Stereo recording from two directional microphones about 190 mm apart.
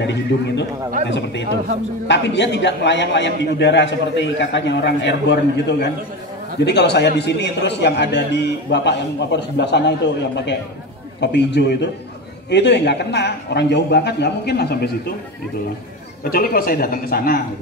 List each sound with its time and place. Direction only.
0.0 s a man's voice: 65° left (ahead or behind)
16.3 s a man's voice: 50° left (ahead or behind)